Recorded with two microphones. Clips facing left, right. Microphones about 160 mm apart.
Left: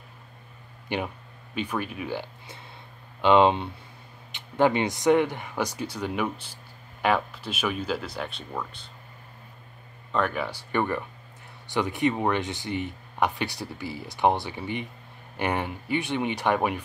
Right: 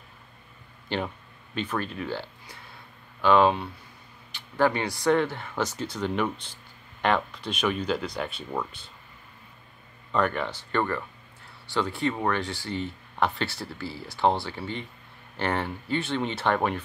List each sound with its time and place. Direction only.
0.8 s speech: 10° left (ahead or behind); by 8.6 s 5° right (ahead or behind)
10.1 s speech: 5° left (ahead or behind)